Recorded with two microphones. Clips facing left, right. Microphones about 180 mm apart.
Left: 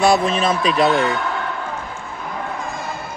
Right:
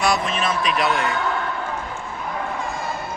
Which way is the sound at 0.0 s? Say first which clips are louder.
Left 6 dB; 30° left (ahead or behind).